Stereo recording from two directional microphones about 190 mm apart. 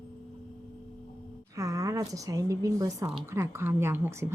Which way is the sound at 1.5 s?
20° right (ahead or behind).